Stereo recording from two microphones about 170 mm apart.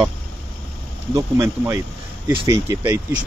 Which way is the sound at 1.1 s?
15° right (ahead or behind).